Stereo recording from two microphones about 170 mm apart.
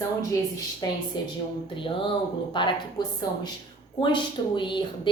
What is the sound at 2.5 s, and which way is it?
A woman's voice, 30° left (ahead or behind).